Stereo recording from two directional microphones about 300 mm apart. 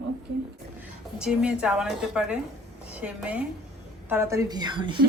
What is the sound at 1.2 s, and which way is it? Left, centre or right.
A woman's voice, centre.